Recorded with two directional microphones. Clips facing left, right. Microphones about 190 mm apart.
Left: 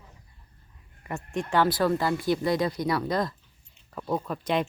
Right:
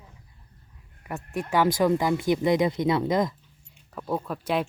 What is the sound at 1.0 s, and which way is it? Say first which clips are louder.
Speech: even; 5° right (ahead or behind).